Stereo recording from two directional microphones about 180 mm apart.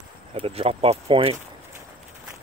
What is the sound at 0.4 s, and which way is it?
Speech, 35° right (ahead or behind).